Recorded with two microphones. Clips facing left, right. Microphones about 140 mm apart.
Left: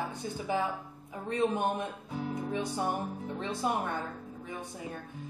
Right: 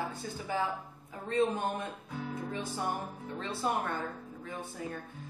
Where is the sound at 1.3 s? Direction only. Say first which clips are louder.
Left 1 dB; 15° left (ahead or behind).